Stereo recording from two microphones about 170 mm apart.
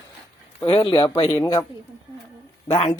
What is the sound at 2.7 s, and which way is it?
Speech, 35° left (ahead or behind).